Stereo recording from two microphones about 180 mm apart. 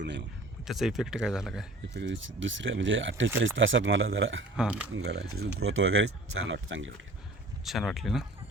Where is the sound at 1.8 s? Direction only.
85° right.